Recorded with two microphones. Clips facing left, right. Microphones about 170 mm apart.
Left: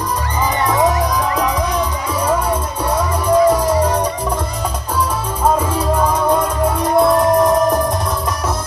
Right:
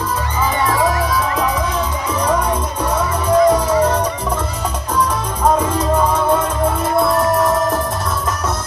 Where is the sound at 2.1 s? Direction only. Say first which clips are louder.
Right 1 dB; 10° left (ahead or behind).